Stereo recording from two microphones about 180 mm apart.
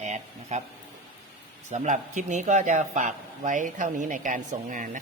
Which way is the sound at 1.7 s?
40° right (ahead or behind).